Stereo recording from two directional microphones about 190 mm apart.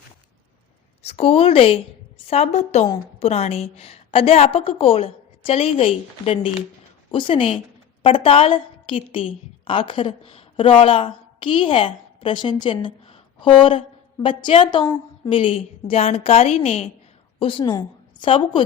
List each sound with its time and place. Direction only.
1.0 s a woman's voice: 30° left (ahead or behind)